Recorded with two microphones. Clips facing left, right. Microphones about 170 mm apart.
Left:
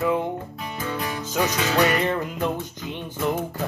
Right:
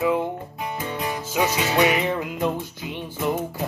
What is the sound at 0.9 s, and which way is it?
Music, 20° right (ahead or behind).